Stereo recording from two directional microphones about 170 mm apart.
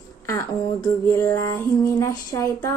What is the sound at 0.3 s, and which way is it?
Music, 15° left (ahead or behind).